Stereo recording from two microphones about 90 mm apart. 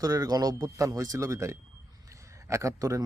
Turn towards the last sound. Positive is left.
turn(degrees=-40)  # may be behind; listen again after turning